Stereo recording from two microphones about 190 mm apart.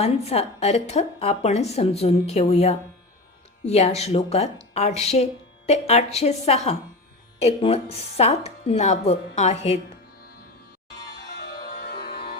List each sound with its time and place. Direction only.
0.0 s a woman's voice: 35° left (ahead or behind)
11.3 s music: 60° left (ahead or behind)